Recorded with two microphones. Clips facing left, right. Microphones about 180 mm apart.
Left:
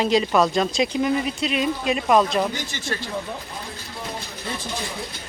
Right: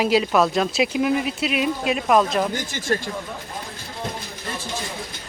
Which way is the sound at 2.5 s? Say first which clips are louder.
Right 5 dB; 50° right (ahead or behind).